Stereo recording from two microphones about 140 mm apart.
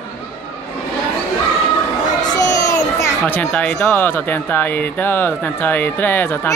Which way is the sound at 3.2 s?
5° left (ahead or behind).